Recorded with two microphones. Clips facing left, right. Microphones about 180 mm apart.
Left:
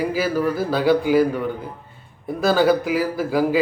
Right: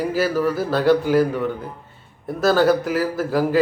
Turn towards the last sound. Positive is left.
turn(degrees=0)  # may be behind; listen again after turning